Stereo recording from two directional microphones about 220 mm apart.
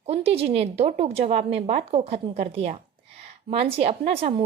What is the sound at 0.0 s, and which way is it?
A woman's voice, 25° right (ahead or behind).